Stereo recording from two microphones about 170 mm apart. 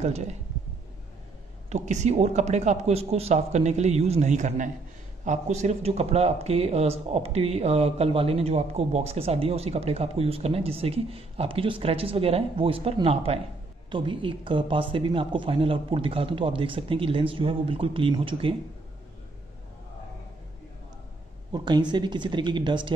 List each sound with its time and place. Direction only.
0.0 s speech: 40° right (ahead or behind)
1.7 s speech: 45° right (ahead or behind)
21.5 s speech: 25° right (ahead or behind)